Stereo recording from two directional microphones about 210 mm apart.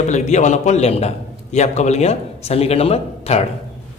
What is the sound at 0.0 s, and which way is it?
A man's voice, 35° left (ahead or behind).